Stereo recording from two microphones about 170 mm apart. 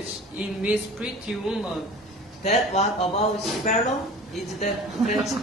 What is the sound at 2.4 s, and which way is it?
Speech, 40° left (ahead or behind).